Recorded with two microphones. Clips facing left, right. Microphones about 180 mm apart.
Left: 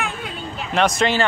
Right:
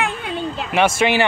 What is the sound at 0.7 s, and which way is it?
Speech, 10° right (ahead or behind).